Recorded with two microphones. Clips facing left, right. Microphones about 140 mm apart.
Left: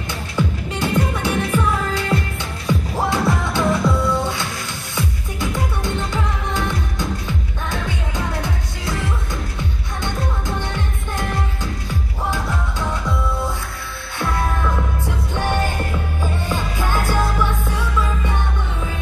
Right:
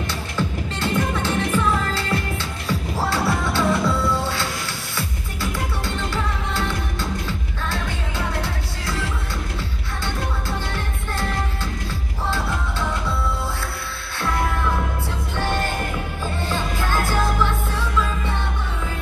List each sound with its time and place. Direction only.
0.4 s music: 15° left (ahead or behind)
11.1 s music: 15° left (ahead or behind)
15.0 s music: 15° left (ahead or behind)